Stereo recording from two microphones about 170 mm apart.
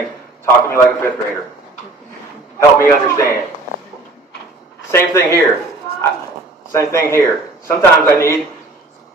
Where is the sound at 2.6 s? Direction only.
15° left (ahead or behind).